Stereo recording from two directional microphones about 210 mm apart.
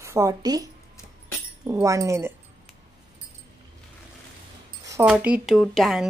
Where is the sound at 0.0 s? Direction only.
15° right (ahead or behind).